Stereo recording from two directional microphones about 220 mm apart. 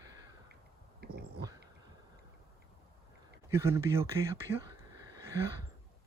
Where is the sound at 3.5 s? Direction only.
10° right (ahead or behind).